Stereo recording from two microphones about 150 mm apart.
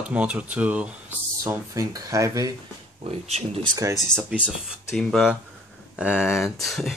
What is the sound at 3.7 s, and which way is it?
Speech, 20° right (ahead or behind).